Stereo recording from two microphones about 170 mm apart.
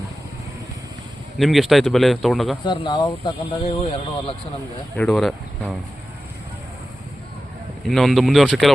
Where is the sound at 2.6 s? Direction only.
25° left (ahead or behind).